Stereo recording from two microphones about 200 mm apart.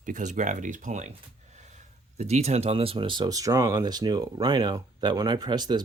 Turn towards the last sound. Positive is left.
turn(degrees=-20)  # may be behind; listen again after turning